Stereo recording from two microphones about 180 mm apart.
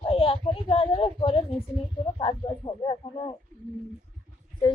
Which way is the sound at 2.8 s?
30° left (ahead or behind).